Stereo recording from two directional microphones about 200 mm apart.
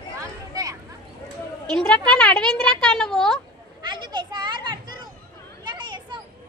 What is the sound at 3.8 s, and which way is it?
Children playing, 25° right (ahead or behind).